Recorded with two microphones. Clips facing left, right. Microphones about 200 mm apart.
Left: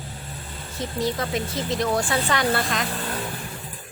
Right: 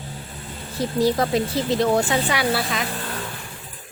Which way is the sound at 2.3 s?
5° right (ahead or behind).